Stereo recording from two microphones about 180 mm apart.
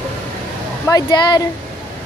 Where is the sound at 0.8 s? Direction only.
20° left (ahead or behind).